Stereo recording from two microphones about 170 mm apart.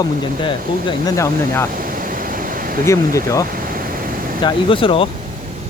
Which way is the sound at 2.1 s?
55° right (ahead or behind).